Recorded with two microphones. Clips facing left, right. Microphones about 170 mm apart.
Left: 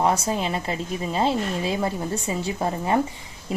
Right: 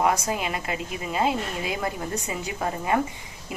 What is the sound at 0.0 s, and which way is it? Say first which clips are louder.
A woman's voice: left 2 dB; 30° left (ahead or behind).